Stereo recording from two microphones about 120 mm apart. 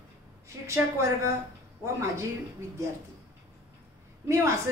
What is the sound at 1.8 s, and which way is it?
Speech, 25° right (ahead or behind).